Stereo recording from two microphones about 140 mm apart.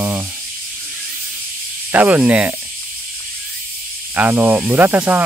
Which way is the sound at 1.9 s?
10° right (ahead or behind).